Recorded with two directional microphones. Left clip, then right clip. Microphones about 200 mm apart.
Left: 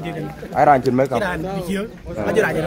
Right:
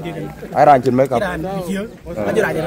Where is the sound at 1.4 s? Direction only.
35° right (ahead or behind).